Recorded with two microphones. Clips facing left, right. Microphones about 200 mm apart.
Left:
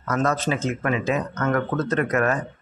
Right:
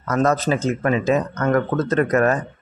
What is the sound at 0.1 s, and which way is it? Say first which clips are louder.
Speech: right 4 dB; 40° right (ahead or behind).